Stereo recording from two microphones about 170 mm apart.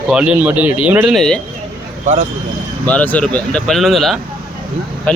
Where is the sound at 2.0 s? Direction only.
35° right (ahead or behind).